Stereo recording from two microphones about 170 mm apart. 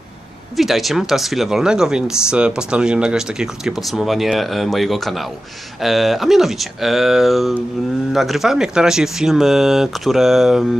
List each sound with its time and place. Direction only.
0.6 s speech: centre (ahead or behind)